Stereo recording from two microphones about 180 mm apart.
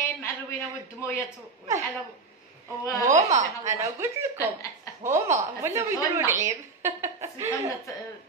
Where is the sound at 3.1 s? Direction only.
45° right (ahead or behind).